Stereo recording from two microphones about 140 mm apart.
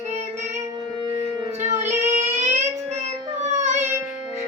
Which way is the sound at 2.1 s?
55° right (ahead or behind).